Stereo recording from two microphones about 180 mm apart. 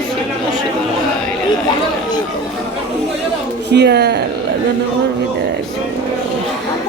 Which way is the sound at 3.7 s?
70° right (ahead or behind).